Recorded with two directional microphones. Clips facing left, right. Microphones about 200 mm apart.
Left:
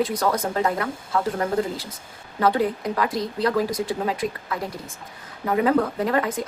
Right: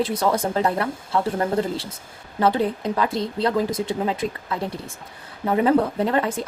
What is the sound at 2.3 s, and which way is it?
Speech, 25° right (ahead or behind).